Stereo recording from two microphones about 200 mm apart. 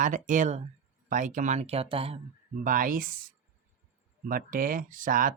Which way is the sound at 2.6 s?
45° right (ahead or behind).